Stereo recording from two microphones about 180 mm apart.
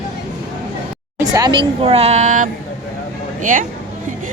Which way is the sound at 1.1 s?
20° right (ahead or behind).